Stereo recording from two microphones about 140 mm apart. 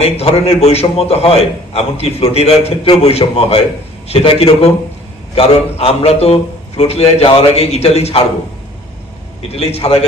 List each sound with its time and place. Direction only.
0.0 s a man's voice: 45° left (ahead or behind)
9.5 s a man's voice: 45° left (ahead or behind)